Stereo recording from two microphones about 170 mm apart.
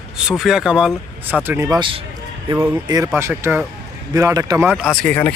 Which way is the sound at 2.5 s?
15° right (ahead or behind).